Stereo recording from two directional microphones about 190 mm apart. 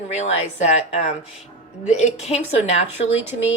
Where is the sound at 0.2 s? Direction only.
35° left (ahead or behind).